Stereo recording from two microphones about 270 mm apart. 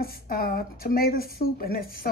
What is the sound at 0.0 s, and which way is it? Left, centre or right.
Speech, left.